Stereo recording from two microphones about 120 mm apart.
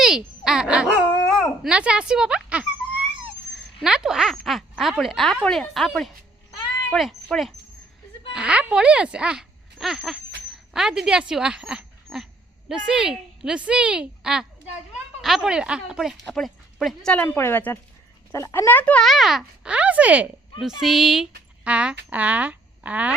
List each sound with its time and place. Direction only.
0.4 s speech: 5° right (ahead or behind)
3.5 s a sound: 5° right (ahead or behind)
4.7 s speech: centre (ahead or behind)
17.2 s speech: 20° left (ahead or behind)
19.0 s speech: centre (ahead or behind)
20.6 s speech: centre (ahead or behind)